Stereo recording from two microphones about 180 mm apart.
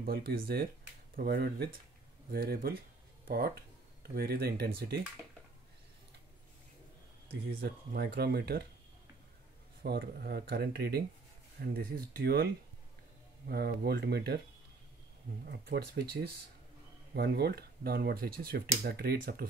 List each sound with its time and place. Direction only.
0.0 s speech: 60° right (ahead or behind)
7.6 s speech: 65° right (ahead or behind)
9.8 s speech: 65° right (ahead or behind)
13.5 s speech: 60° right (ahead or behind)
15.4 s speech: 65° right (ahead or behind)